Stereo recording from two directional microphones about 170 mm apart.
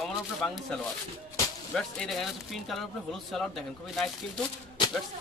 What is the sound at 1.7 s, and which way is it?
Speech, centre (ahead or behind).